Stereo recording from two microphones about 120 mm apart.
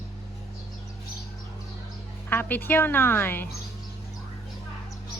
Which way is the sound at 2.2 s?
15° left (ahead or behind).